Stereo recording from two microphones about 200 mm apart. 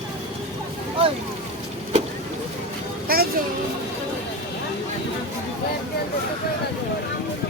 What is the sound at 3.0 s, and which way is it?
Children playing, 50° right (ahead or behind).